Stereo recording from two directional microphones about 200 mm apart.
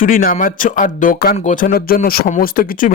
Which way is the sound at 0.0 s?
45° left (ahead or behind).